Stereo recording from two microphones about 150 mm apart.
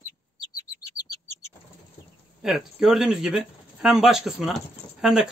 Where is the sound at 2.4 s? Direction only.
5° right (ahead or behind).